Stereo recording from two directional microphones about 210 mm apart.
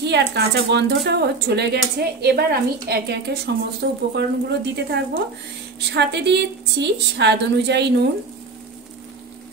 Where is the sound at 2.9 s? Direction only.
50° right (ahead or behind).